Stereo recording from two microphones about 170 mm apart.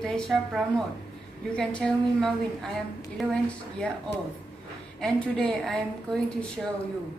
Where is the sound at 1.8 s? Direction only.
5° left (ahead or behind).